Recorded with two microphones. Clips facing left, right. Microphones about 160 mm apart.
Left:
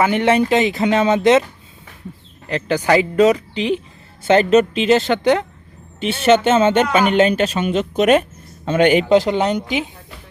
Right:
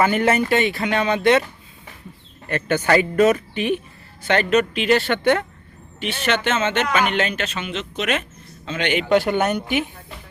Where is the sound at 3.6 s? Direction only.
90° left.